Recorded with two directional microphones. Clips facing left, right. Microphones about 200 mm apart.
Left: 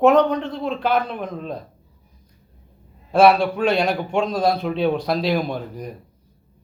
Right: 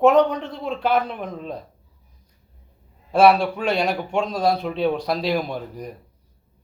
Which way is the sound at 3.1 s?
Centre (ahead or behind).